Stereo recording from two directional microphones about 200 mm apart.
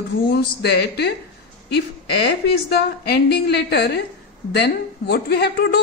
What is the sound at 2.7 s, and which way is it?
A woman's voice, 55° left (ahead or behind).